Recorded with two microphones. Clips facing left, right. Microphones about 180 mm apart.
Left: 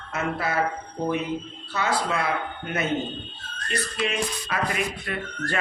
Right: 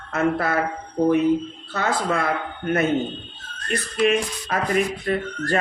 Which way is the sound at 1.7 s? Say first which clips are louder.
Right 2 dB; 50° right (ahead or behind).